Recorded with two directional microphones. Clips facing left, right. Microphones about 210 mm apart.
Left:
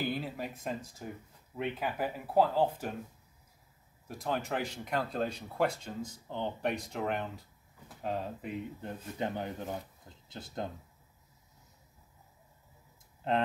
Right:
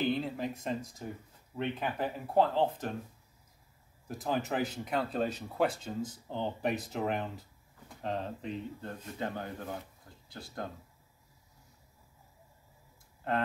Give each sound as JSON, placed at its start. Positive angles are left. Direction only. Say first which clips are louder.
{"t": 0.0, "sound": "speech", "louder": "right 4 dB", "side_deg": 5}
{"t": 4.1, "sound": "speech", "louder": "right 1 dB", "side_deg": 0}
{"t": 9.2, "sound": "speech", "louder": "left 2 dB", "side_deg": 20}
{"t": 13.2, "sound": "speech", "louder": "left 2 dB", "side_deg": 20}